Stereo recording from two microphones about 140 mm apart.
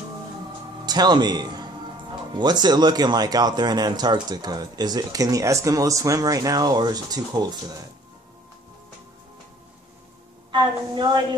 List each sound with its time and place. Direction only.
0.8 s a man's voice: 30° right (ahead or behind)
10.5 s a woman's voice: 30° right (ahead or behind)